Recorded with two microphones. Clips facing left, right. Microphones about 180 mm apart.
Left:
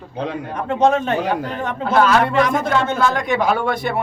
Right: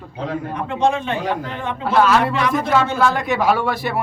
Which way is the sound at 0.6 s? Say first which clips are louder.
Left 4 dB; 40° left (ahead or behind).